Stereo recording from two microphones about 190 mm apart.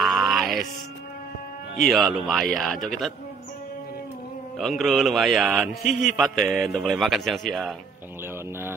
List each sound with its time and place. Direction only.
0.0 s music: centre (ahead or behind)
1.9 s a man's voice: centre (ahead or behind)
4.6 s a man's voice: centre (ahead or behind)